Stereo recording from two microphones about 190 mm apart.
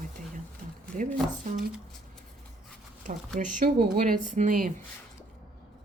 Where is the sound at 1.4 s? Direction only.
45° right (ahead or behind).